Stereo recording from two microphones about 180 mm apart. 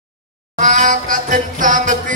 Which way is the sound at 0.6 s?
45° right (ahead or behind).